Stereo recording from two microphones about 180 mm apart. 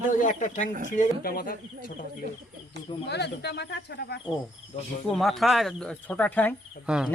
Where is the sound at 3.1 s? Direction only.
70° left (ahead or behind).